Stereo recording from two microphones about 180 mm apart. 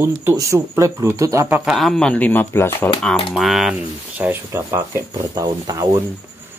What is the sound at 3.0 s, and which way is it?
Speech, centre (ahead or behind).